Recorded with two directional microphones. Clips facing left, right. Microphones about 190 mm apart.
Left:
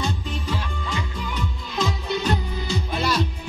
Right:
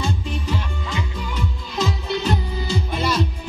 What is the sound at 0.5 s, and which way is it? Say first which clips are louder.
Music: even; 5° right (ahead or behind).